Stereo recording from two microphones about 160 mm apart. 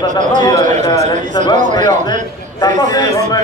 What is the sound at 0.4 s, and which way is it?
Speech, 25° left (ahead or behind).